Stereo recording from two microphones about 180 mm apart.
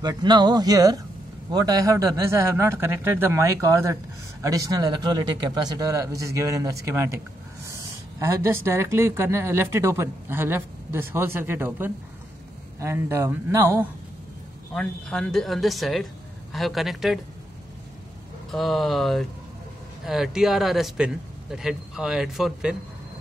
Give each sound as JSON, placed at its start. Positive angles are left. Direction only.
{"t": 0.0, "sound": "speech", "side_deg": -25}
{"t": 14.7, "sound": "a man's voice", "side_deg": 5}
{"t": 18.5, "sound": "a man's voice", "side_deg": 0}